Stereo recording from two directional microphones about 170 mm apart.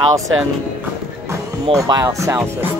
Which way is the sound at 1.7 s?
25° right (ahead or behind).